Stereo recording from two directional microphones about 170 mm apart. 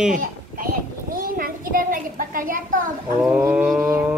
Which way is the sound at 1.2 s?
55° right (ahead or behind).